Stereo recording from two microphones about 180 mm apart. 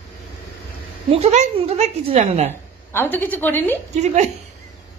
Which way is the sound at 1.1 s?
40° right (ahead or behind).